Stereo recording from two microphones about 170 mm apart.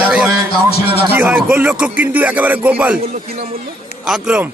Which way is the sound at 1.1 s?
10° right (ahead or behind).